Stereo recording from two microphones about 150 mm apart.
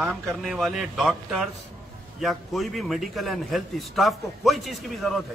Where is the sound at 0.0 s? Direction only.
Centre (ahead or behind).